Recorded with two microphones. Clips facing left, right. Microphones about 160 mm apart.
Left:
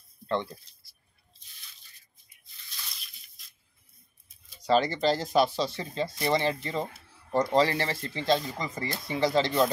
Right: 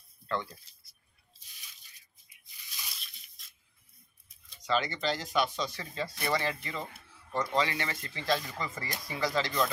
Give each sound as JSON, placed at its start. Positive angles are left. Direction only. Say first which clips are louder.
{"t": 0.3, "sound": "speech", "louder": "left 5 dB", "side_deg": 25}
{"t": 2.5, "sound": "drip", "louder": "left 1 dB", "side_deg": -10}
{"t": 3.0, "sound": "drip", "louder": "even", "side_deg": 0}
{"t": 4.6, "sound": "speech", "louder": "left 7 dB", "side_deg": 35}